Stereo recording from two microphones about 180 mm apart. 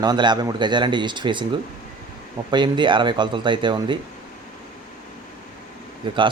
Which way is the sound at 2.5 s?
25° right (ahead or behind).